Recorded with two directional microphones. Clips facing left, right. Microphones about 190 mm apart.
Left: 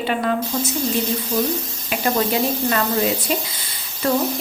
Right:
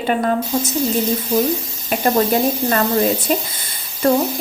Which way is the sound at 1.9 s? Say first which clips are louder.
Right 4 dB; 40° right (ahead or behind).